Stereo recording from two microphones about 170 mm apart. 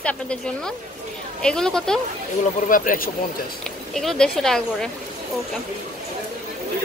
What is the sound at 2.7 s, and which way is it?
Speech, 55° left (ahead or behind).